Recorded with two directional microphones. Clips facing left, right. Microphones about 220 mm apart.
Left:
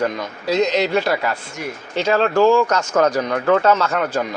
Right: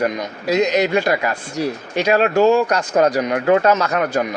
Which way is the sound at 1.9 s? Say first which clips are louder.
Right 1 dB; 15° right (ahead or behind).